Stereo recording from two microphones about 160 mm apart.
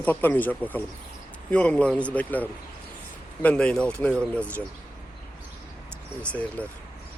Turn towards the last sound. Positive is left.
turn(degrees=10)  # may be behind; listen again after turning